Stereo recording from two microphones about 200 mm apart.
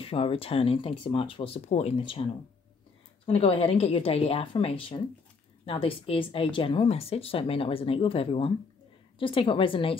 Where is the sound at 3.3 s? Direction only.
30° left (ahead or behind).